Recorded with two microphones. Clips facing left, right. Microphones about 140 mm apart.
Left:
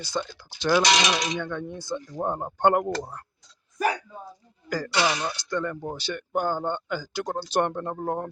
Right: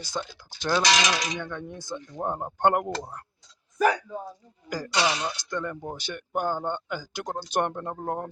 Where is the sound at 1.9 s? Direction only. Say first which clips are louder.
Left 4 dB; 35° left (ahead or behind).